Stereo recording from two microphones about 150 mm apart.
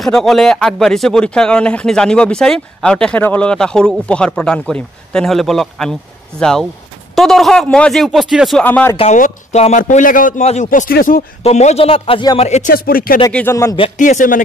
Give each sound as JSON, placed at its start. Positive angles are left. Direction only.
{"t": 0.0, "sound": "speech", "side_deg": 0}
{"t": 7.2, "sound": "speech", "side_deg": 0}
{"t": 8.6, "sound": "a man's voice", "side_deg": 15}
{"t": 9.1, "sound": "a man's voice", "side_deg": 50}
{"t": 11.4, "sound": "a man's voice", "side_deg": 45}
{"t": 12.4, "sound": "speech", "side_deg": 50}
{"t": 12.7, "sound": "speech", "side_deg": 75}
{"t": 13.3, "sound": "a man's voice", "side_deg": 15}
{"t": 13.9, "sound": "a man's voice", "side_deg": 55}